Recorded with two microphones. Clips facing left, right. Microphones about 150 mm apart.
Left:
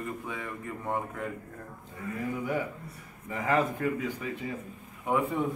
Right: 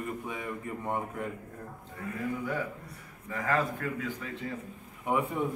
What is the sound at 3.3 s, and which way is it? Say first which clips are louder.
A man's voice: left 2 dB; 20° left (ahead or behind).